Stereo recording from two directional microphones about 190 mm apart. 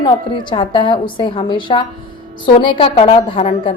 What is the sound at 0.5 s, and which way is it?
Speech, 25° left (ahead or behind).